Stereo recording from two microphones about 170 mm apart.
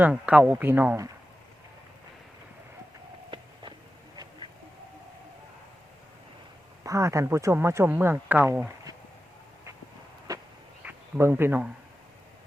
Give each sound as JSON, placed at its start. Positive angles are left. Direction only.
{"t": 0.0, "sound": "speech", "side_deg": -5}
{"t": 3.2, "sound": "a sound", "side_deg": -30}
{"t": 6.8, "sound": "speech", "side_deg": -20}
{"t": 10.8, "sound": "speech", "side_deg": -15}